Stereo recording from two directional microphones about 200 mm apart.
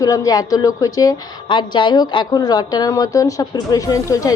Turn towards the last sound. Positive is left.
turn(degrees=15)  # may be behind; listen again after turning